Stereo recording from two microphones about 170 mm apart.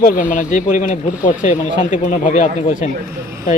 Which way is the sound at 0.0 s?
50° left (ahead or behind).